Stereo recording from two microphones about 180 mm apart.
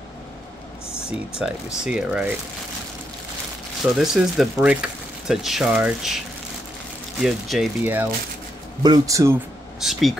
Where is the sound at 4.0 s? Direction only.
Centre (ahead or behind).